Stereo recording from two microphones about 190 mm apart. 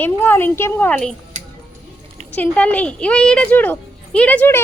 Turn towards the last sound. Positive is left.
turn(degrees=10)  # may be behind; listen again after turning